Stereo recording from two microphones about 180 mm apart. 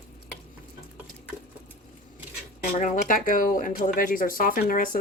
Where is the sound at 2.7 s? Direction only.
45° left (ahead or behind).